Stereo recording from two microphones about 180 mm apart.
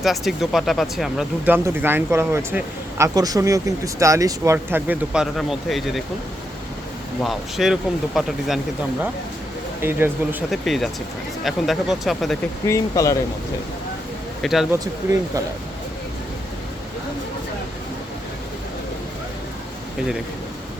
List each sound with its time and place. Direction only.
0.0 s speech: centre (ahead or behind)
7.2 s speech: centre (ahead or behind)
9.8 s speech: 10° right (ahead or behind)
10.5 s speech: centre (ahead or behind)
12.6 s speech: 15° left (ahead or behind)
14.4 s speech: centre (ahead or behind)